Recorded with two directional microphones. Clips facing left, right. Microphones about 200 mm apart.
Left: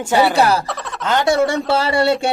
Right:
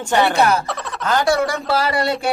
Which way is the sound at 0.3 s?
35° left (ahead or behind).